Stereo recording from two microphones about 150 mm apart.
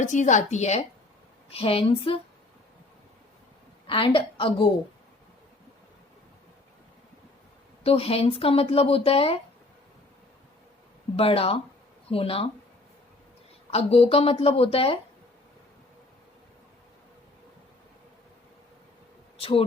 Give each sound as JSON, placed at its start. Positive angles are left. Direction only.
{"t": 0.0, "sound": "a woman's voice", "side_deg": 55}
{"t": 3.8, "sound": "speech", "side_deg": 35}
{"t": 7.9, "sound": "speech", "side_deg": 40}
{"t": 11.2, "sound": "speech", "side_deg": 40}
{"t": 13.7, "sound": "speech", "side_deg": 40}
{"t": 19.4, "sound": "speech", "side_deg": 40}